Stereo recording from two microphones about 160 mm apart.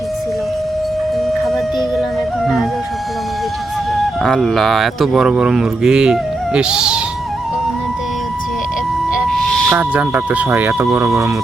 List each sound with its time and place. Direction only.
1.5 s music: centre (ahead or behind)
3.9 s speech: centre (ahead or behind)
9.2 s music: centre (ahead or behind)
9.7 s speech: 10° right (ahead or behind)